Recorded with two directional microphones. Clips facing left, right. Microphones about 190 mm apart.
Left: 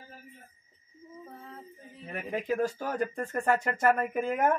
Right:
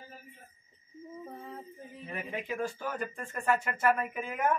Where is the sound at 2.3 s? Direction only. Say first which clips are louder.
Left 7 dB; 40° left (ahead or behind).